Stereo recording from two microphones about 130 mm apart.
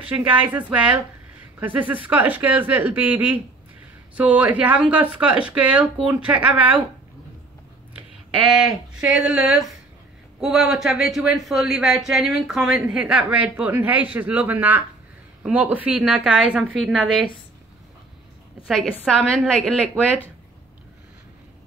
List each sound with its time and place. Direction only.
0.0 s speech: 10° right (ahead or behind)
8.5 s speech: 5° right (ahead or behind)
19.2 s speech: 5° left (ahead or behind)